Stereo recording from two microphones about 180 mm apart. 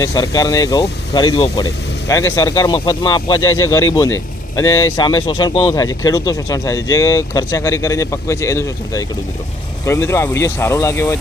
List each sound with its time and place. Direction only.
0.0 s speech: 20° left (ahead or behind)